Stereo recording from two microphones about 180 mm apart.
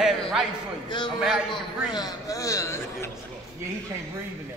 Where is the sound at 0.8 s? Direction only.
25° left (ahead or behind).